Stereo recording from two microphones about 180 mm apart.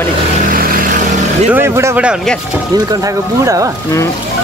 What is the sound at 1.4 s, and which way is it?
Speech, 10° right (ahead or behind).